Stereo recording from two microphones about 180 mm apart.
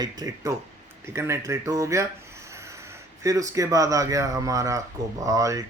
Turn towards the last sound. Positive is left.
turn(degrees=-20)  # may be behind; listen again after turning